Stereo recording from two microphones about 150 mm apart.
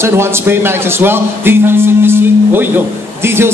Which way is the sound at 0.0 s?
15° right (ahead or behind).